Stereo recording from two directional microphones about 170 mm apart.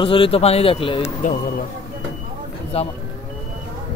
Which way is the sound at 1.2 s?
50° left (ahead or behind).